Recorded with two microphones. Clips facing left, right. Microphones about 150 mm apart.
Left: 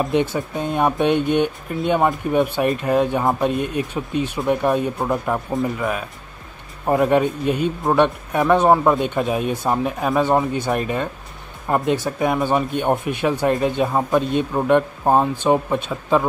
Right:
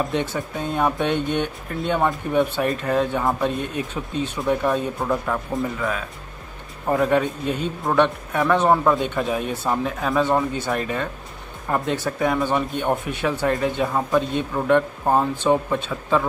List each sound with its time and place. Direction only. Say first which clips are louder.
0.0 s a man's voice: left 4 dB; 15° left (ahead or behind)